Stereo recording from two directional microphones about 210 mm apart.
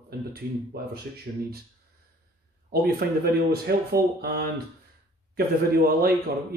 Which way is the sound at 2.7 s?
45° right (ahead or behind).